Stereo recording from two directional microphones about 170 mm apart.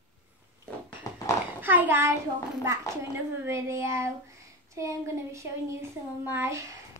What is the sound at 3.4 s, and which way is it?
Speech, 15° right (ahead or behind).